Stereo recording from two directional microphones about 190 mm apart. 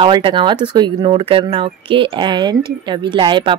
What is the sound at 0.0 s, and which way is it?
A woman's voice, 25° right (ahead or behind).